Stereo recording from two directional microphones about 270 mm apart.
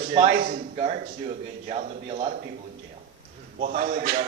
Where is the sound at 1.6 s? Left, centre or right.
Right.